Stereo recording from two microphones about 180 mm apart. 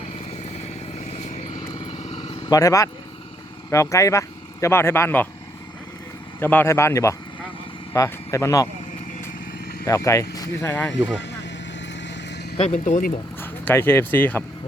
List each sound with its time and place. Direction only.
0.3 s vehicle: 40° left (ahead or behind)
2.5 s speech: 20° left (ahead or behind)
6.4 s speech: 10° left (ahead or behind)
9.8 s speech: 20° left (ahead or behind)
11.2 s vehicle: 75° left (ahead or behind)
12.5 s speech: 40° left (ahead or behind)
13.4 s speech: 10° left (ahead or behind)